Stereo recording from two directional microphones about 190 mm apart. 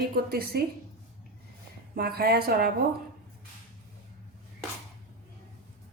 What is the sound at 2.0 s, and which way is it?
Speech, 55° right (ahead or behind).